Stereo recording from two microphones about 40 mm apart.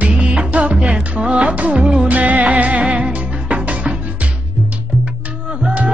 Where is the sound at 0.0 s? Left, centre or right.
Right.